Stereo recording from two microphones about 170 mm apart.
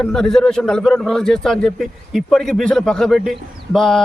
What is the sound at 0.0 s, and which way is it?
A man's voice, 5° left (ahead or behind).